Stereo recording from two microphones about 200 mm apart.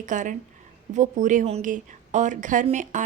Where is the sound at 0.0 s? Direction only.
40° right (ahead or behind).